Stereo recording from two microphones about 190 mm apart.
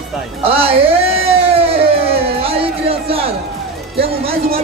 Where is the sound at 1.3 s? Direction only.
30° right (ahead or behind).